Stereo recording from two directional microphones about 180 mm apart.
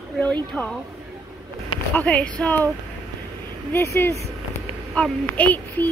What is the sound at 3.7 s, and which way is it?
A child's voice, 15° left (ahead or behind).